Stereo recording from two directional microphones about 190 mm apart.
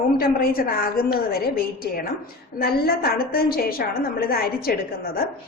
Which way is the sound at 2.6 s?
50° left (ahead or behind).